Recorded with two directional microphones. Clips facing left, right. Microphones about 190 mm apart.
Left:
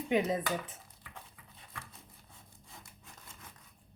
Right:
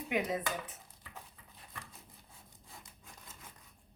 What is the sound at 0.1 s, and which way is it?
Dishes, 25° left (ahead or behind).